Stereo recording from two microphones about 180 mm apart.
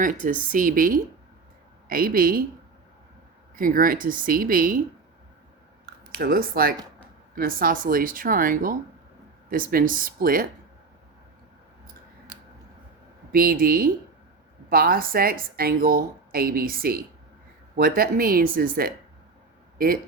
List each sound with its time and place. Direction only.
0.0 s speech: 45° right (ahead or behind)
3.5 s speech: 50° right (ahead or behind)
6.1 s speech: 55° right (ahead or behind)
13.3 s speech: 55° right (ahead or behind)